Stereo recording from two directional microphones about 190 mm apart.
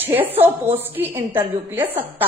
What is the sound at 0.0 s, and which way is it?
A woman's voice, 10° right (ahead or behind).